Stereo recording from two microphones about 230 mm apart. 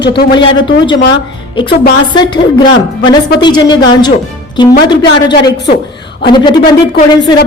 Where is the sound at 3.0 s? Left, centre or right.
Centre.